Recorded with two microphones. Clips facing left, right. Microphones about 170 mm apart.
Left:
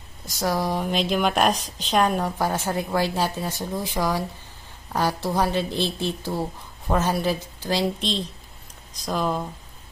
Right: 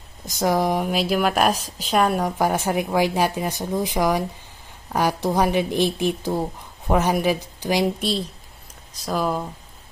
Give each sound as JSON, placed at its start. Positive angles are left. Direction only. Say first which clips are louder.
{"t": 0.2, "sound": "speech", "louder": "right 4 dB", "side_deg": -20}